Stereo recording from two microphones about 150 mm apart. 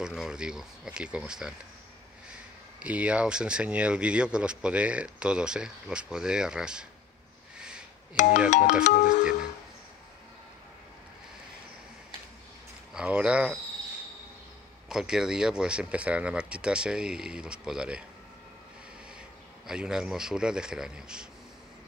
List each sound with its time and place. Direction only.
0.0 s speech: 5° right (ahead or behind)
2.8 s speech: 10° right (ahead or behind)
7.5 s a sound: 5° right (ahead or behind)
8.5 s speech: 55° left (ahead or behind)
12.9 s speech: 5° right (ahead or behind)
14.9 s speech: 5° right (ahead or behind)
19.6 s speech: 5° right (ahead or behind)